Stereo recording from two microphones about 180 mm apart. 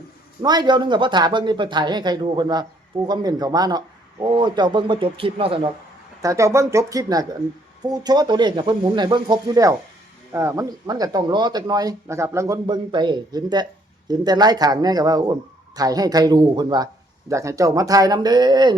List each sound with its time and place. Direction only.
0.4 s speech: 25° right (ahead or behind)
6.2 s speech: 15° right (ahead or behind)